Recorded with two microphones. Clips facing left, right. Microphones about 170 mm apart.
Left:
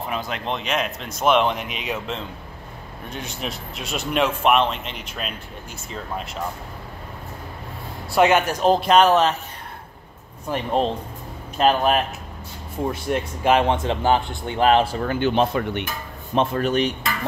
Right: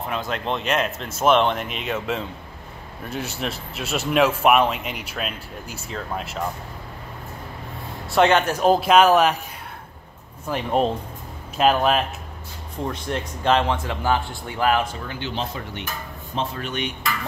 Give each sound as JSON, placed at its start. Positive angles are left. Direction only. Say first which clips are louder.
{"t": 0.1, "sound": "speech", "louder": "right 2 dB", "side_deg": 0}
{"t": 8.1, "sound": "speech", "louder": "even", "side_deg": 5}
{"t": 8.5, "sound": "speech", "louder": "right 1 dB", "side_deg": -5}
{"t": 10.5, "sound": "speech", "louder": "even", "side_deg": -5}
{"t": 13.7, "sound": "speech", "louder": "left 3 dB", "side_deg": 20}
{"t": 15.0, "sound": "speech", "louder": "left 9 dB", "side_deg": 50}
{"t": 16.3, "sound": "speech", "louder": "left 7 dB", "side_deg": 45}